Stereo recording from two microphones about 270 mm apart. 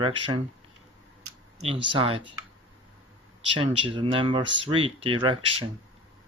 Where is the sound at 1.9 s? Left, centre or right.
Right.